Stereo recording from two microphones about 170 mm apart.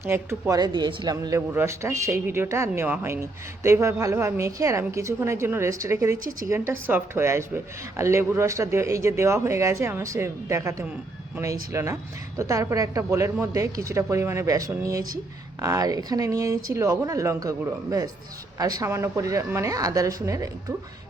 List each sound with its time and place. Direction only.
0.0 s a woman's voice: 15° right (ahead or behind)
18.6 s a woman's voice: 20° right (ahead or behind)